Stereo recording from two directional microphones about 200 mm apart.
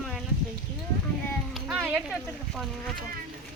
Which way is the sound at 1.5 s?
5° right (ahead or behind).